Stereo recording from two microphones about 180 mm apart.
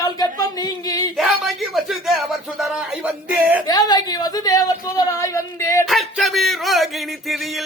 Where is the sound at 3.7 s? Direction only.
20° left (ahead or behind).